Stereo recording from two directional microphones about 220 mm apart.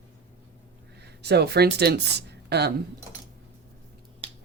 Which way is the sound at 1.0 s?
50° right (ahead or behind).